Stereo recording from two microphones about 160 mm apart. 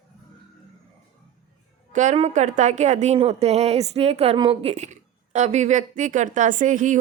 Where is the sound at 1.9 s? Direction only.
50° right (ahead or behind).